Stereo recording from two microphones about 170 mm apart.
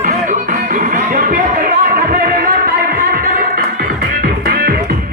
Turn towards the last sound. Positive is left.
turn(degrees=-60)  # may be behind; listen again after turning